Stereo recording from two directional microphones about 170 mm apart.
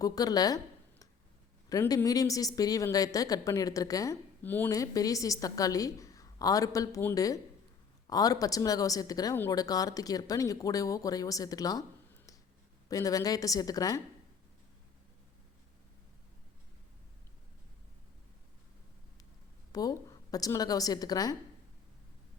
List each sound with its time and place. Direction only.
0.0 s speech: 20° left (ahead or behind)
19.7 s speech: 20° left (ahead or behind)